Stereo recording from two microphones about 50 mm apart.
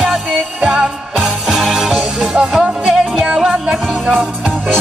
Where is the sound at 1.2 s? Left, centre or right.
Centre.